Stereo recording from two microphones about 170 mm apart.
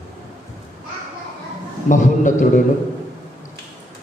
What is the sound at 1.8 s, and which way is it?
Speech, 50° left (ahead or behind).